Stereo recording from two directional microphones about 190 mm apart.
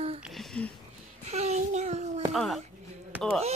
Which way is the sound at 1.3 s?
35° right (ahead or behind).